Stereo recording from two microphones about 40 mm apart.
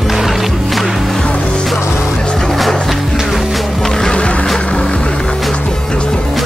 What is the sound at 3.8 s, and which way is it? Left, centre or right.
Music, centre.